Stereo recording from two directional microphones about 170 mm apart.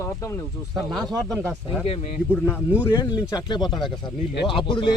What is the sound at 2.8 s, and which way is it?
Speech, 20° left (ahead or behind).